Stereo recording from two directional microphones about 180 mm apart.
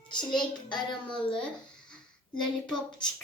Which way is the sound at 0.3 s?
25° left (ahead or behind).